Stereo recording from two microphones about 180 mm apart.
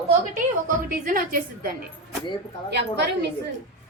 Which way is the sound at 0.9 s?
50° right (ahead or behind).